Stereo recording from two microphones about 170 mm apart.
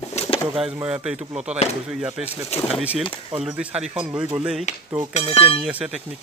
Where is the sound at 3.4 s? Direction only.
5° right (ahead or behind).